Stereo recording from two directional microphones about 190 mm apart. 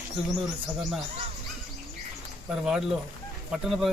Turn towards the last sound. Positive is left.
turn(degrees=0)  # may be behind; listen again after turning